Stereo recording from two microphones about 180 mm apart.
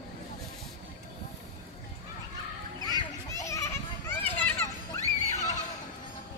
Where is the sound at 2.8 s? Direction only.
20° left (ahead or behind).